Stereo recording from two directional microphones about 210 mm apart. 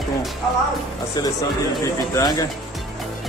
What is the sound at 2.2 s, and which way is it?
Speech, 15° left (ahead or behind).